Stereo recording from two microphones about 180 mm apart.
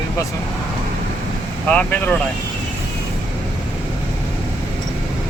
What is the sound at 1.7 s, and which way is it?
Speech, 10° left (ahead or behind).